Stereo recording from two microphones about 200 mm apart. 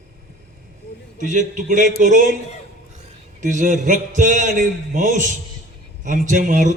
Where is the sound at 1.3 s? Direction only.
40° right (ahead or behind).